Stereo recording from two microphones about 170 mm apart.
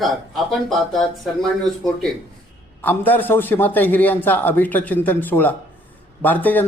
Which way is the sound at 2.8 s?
10° left (ahead or behind).